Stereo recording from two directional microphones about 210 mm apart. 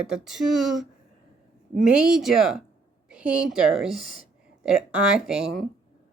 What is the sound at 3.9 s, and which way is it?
Speech, 40° left (ahead or behind).